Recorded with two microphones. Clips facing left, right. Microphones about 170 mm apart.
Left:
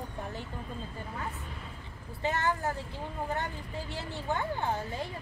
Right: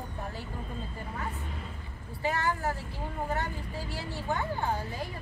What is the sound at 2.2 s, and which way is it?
Vehicle, 20° left (ahead or behind).